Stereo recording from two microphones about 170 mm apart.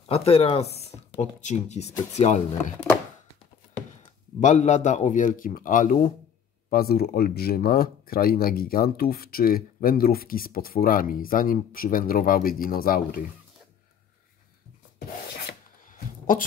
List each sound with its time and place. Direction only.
0.1 s speech: 35° left (ahead or behind)
4.4 s a man's voice: 45° left (ahead or behind)
6.7 s speech: 60° left (ahead or behind)
15.4 s a sound: 55° left (ahead or behind)